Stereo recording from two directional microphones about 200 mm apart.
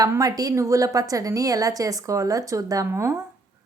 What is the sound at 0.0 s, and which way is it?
A woman's voice, 20° right (ahead or behind).